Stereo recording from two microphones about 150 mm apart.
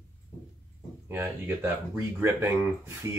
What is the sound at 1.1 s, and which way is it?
Speech, 15° right (ahead or behind).